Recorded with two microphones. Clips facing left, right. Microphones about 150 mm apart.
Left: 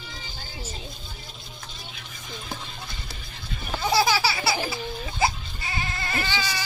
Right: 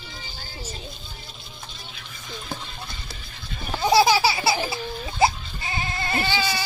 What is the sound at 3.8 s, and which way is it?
Laughter, 20° right (ahead or behind).